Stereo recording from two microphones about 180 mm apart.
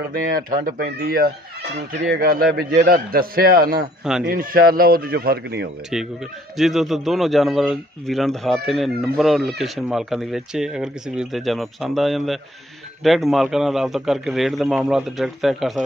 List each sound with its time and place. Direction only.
0.1 s a man's voice: 50° right (ahead or behind)
4.0 s speech: 5° right (ahead or behind)
4.3 s speech: 55° right (ahead or behind)
6.5 s speech: centre (ahead or behind)